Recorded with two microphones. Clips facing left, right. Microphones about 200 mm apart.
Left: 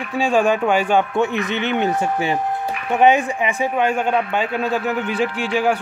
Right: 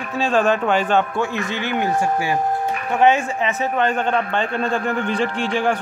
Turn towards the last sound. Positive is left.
turn(degrees=10)  # may be behind; listen again after turning